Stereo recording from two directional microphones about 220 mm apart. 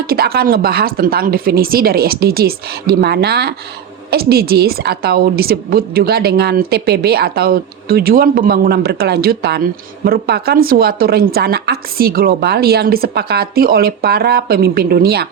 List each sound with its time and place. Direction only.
0.1 s a woman's voice: 45° right (ahead or behind)